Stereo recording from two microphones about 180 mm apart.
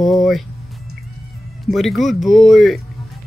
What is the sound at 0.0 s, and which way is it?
Speech, centre (ahead or behind).